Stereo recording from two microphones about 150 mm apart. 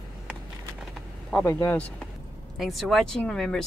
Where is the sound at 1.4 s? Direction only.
15° left (ahead or behind).